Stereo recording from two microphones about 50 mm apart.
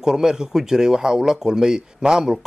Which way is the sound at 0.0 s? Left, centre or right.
Centre.